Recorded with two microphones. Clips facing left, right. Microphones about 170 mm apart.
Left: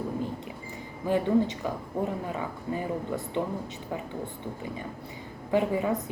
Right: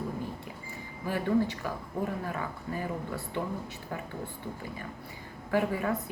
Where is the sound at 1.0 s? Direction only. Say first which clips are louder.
Left 4 dB; 20° left (ahead or behind).